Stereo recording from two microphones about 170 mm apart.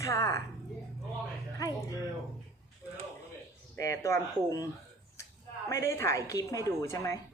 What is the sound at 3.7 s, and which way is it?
Speech, 15° left (ahead or behind).